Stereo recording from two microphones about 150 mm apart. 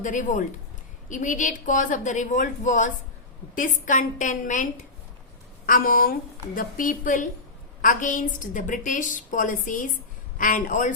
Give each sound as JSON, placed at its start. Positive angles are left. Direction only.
{"t": 0.0, "sound": "a woman's voice", "side_deg": 60}
{"t": 5.6, "sound": "a woman's voice", "side_deg": 70}